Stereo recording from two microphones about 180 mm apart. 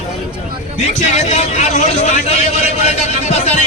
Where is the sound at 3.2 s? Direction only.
40° left (ahead or behind).